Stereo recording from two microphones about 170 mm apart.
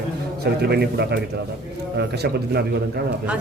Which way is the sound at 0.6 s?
70° right (ahead or behind).